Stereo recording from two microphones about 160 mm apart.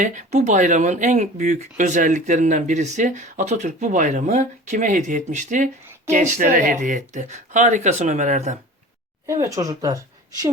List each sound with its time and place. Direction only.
0.0 s speech: 50° right (ahead or behind)
9.2 s speech: 20° right (ahead or behind)